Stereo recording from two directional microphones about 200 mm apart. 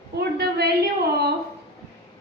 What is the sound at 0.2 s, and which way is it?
Speech, 55° right (ahead or behind).